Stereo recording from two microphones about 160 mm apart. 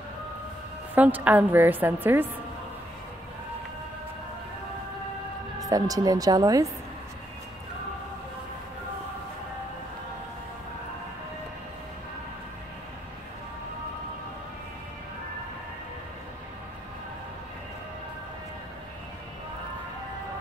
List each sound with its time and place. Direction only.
0.9 s a woman's voice: 10° right (ahead or behind)
5.6 s speech: 20° right (ahead or behind)